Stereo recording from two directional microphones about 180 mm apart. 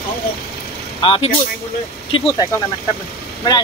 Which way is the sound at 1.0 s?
30° left (ahead or behind).